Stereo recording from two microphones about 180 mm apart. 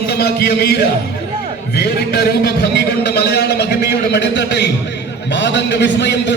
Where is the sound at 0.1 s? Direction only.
65° left (ahead or behind).